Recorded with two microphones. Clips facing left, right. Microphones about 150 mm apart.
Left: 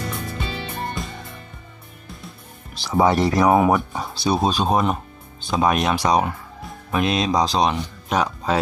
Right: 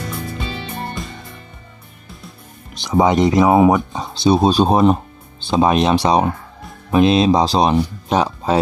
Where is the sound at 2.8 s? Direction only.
20° right (ahead or behind).